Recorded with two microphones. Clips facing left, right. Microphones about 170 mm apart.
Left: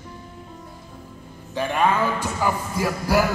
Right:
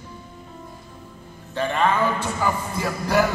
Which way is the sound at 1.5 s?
10° left (ahead or behind).